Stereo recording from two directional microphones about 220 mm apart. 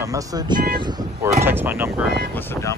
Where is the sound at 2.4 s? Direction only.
10° left (ahead or behind).